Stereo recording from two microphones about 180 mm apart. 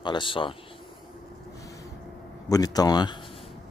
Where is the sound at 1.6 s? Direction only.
20° left (ahead or behind).